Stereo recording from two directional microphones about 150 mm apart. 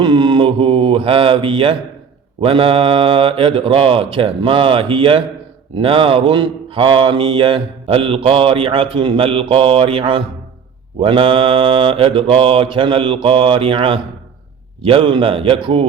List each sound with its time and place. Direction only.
0.0 s speech: 30° right (ahead or behind)